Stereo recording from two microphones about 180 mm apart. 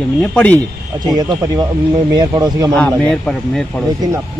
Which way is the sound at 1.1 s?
20° right (ahead or behind).